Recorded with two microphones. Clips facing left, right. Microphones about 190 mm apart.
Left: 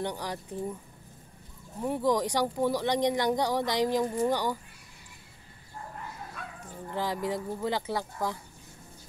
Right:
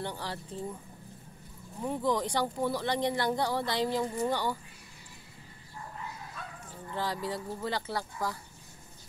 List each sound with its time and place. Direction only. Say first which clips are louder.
0.0 s speech: left 4 dB; 15° left (ahead or behind)
1.8 s speech: left 3 dB; 10° left (ahead or behind)
6.9 s speech: left 3 dB; 15° left (ahead or behind)